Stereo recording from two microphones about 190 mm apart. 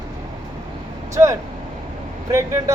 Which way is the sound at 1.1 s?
15° right (ahead or behind).